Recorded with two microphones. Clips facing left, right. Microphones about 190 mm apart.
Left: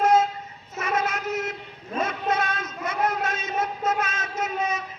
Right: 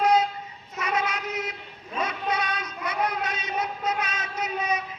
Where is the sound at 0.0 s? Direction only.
45° left (ahead or behind).